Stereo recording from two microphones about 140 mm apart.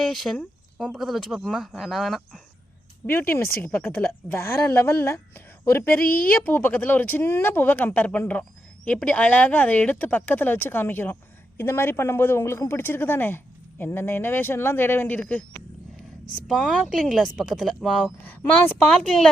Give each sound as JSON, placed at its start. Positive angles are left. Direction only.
{"t": 0.0, "sound": "speech", "side_deg": 0}
{"t": 3.1, "sound": "speech", "side_deg": 15}
{"t": 16.5, "sound": "speech", "side_deg": 0}
{"t": 18.2, "sound": "speech", "side_deg": 10}